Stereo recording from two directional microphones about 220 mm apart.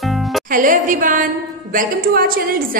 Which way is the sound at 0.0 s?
Centre (ahead or behind).